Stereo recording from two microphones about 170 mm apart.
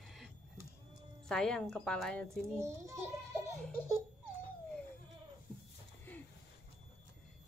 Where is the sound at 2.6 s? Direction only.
15° right (ahead or behind).